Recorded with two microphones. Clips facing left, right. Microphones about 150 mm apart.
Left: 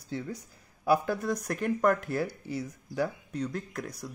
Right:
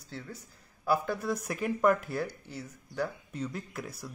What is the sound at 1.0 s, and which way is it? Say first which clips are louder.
Speech: left 2 dB; 5° right (ahead or behind).